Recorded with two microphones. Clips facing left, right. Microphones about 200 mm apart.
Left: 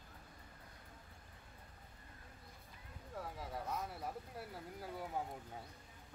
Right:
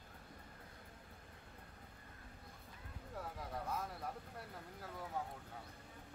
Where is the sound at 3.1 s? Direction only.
Centre (ahead or behind).